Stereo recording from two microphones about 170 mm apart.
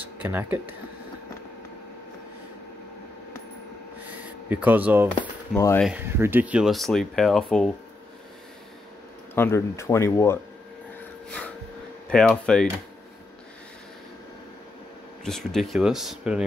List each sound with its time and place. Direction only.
0.0 s speech: 10° right (ahead or behind)
4.5 s speech: 10° right (ahead or behind)
9.3 s speech: 15° left (ahead or behind)
11.2 s a sound: 5° left (ahead or behind)
12.1 s speech: 5° left (ahead or behind)
15.2 s speech: centre (ahead or behind)